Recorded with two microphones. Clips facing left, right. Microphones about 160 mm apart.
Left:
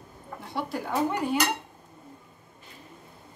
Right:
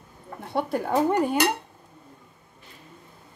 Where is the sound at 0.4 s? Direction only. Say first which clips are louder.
Right 6 dB; 55° right (ahead or behind).